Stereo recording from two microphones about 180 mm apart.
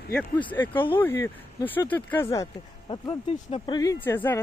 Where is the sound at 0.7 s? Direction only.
30° left (ahead or behind).